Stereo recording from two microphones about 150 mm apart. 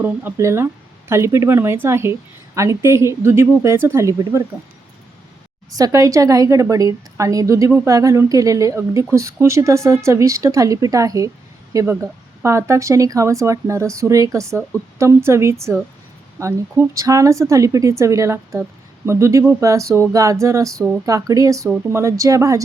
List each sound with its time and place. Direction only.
0.0 s speech: 15° right (ahead or behind)
5.7 s a woman's voice: 20° right (ahead or behind)